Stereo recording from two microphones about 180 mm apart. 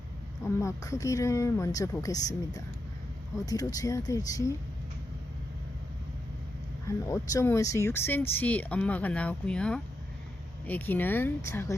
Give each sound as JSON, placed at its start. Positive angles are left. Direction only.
{"t": 0.4, "sound": "speech", "side_deg": 15}
{"t": 3.4, "sound": "speech", "side_deg": 20}
{"t": 6.8, "sound": "speech", "side_deg": 15}